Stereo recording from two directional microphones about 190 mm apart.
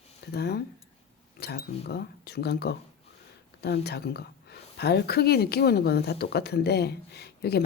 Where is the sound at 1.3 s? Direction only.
60° left (ahead or behind).